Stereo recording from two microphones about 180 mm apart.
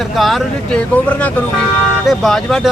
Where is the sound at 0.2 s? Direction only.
Centre (ahead or behind).